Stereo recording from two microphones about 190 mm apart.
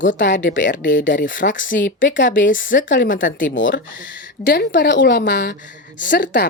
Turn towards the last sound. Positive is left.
turn(degrees=45)  # may be behind; listen again after turning